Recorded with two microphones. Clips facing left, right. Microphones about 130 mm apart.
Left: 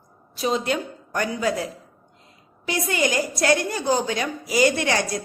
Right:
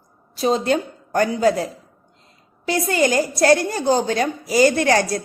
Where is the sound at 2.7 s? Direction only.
35° right (ahead or behind).